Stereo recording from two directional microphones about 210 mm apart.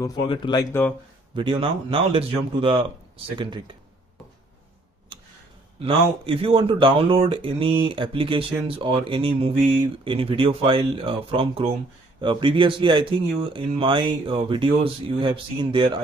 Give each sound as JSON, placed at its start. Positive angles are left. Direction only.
{"t": 0.0, "sound": "speech", "side_deg": 20}
{"t": 1.3, "sound": "speech", "side_deg": -20}
{"t": 5.8, "sound": "speech", "side_deg": -25}